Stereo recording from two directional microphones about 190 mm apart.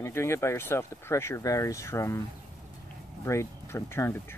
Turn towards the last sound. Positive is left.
turn(degrees=10)  # may be behind; listen again after turning